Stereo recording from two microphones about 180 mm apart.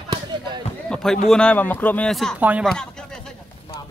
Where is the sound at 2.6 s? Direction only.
5° left (ahead or behind).